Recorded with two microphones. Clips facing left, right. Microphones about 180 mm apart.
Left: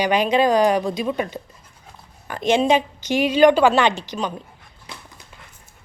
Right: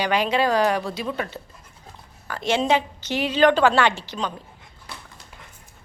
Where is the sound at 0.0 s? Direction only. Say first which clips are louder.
Left 4 dB; 15° left (ahead or behind).